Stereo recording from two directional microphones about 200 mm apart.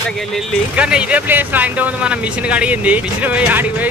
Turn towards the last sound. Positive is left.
turn(degrees=-10)  # may be behind; listen again after turning